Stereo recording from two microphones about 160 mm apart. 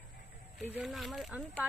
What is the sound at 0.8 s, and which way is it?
Speech, centre (ahead or behind).